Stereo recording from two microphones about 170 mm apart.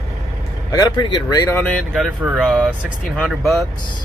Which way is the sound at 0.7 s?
20° left (ahead or behind).